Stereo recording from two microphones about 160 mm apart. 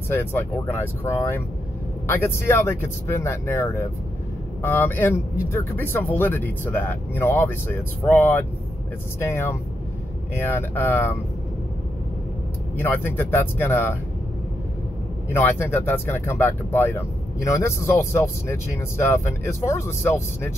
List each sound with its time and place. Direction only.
0.1 s speech: 15° left (ahead or behind)
12.7 s speech: 15° left (ahead or behind)
15.2 s speech: 15° left (ahead or behind)